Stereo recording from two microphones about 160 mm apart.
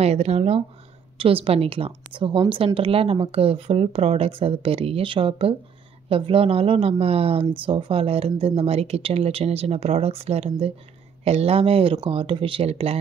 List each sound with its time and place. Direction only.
0.0 s a woman's voice: 40° right (ahead or behind)